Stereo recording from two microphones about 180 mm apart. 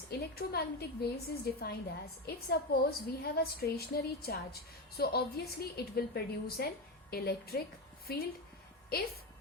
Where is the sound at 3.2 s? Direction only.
60° left (ahead or behind).